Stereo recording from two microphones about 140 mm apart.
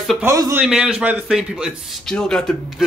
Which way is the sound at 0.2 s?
20° right (ahead or behind).